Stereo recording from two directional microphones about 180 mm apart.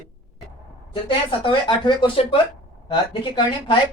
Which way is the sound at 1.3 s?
25° left (ahead or behind).